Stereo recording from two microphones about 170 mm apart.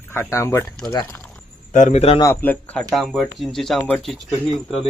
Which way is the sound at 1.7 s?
45° left (ahead or behind).